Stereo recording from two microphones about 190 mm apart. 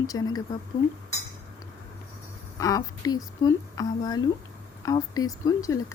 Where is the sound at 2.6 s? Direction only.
20° left (ahead or behind).